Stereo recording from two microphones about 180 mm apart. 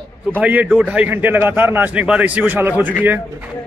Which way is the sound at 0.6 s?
5° left (ahead or behind).